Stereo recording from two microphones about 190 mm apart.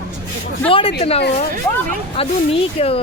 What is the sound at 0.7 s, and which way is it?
Speech, 30° left (ahead or behind).